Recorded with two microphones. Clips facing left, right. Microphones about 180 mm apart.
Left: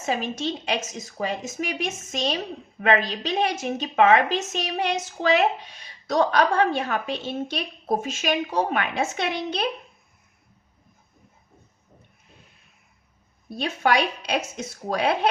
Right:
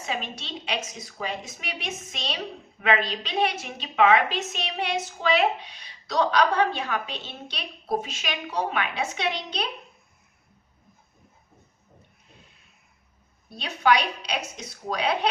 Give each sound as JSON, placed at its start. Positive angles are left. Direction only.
{"t": 0.0, "sound": "a woman's voice", "side_deg": 45}
{"t": 13.5, "sound": "a woman's voice", "side_deg": 50}